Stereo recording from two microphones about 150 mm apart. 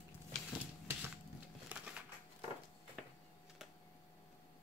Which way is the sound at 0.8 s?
15° right (ahead or behind).